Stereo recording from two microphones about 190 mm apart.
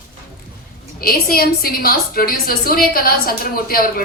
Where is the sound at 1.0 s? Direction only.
50° left (ahead or behind).